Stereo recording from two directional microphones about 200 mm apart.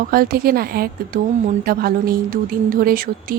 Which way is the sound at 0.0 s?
50° right (ahead or behind).